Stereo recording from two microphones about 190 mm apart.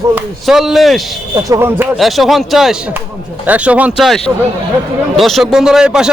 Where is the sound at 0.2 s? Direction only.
Centre (ahead or behind).